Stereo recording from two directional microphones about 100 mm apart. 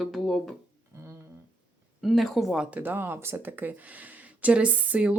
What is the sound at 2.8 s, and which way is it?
Speech, 20° right (ahead or behind).